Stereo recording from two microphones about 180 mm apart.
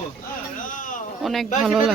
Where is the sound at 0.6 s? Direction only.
45° left (ahead or behind).